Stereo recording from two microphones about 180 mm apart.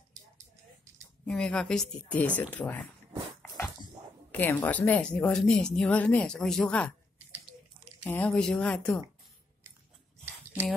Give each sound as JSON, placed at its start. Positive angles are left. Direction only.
{"t": 1.2, "sound": "a woman's voice", "side_deg": 5}
{"t": 4.3, "sound": "a woman's voice", "side_deg": 10}
{"t": 8.0, "sound": "a woman's voice", "side_deg": 5}